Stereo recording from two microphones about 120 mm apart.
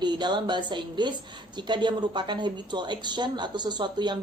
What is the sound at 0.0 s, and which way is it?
Speech, 40° right (ahead or behind).